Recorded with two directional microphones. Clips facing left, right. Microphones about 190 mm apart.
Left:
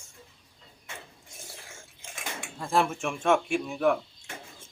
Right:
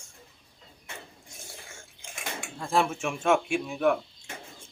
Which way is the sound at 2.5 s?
Centre (ahead or behind).